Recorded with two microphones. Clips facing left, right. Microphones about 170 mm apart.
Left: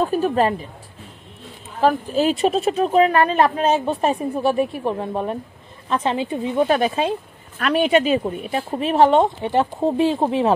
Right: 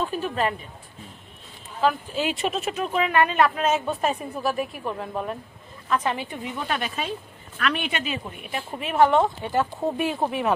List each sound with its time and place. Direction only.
0.0 s speech: 40° left (ahead or behind)
1.8 s a woman's voice: 40° left (ahead or behind)
7.5 s speech: 35° left (ahead or behind)